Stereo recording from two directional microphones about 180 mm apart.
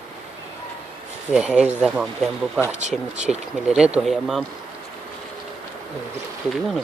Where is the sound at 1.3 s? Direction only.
5° right (ahead or behind).